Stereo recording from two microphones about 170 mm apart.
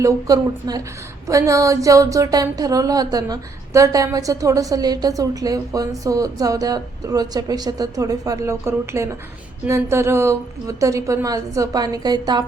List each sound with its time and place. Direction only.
0.0 s speech: 20° right (ahead or behind)